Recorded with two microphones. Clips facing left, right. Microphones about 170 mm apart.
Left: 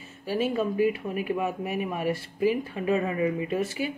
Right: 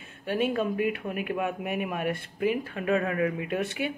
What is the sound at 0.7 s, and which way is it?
Speech, 60° right (ahead or behind).